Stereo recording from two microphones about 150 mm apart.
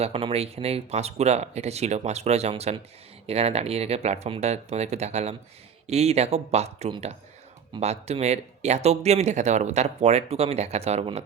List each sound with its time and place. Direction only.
0.0 s speech: 40° right (ahead or behind)